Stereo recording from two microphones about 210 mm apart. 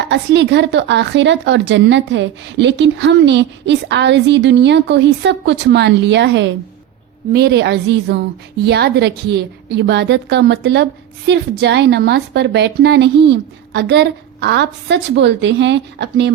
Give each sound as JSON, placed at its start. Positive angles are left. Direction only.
{"t": 0.1, "sound": "a woman's voice", "side_deg": -55}